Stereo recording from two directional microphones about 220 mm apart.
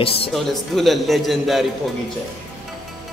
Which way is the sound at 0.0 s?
25° left (ahead or behind).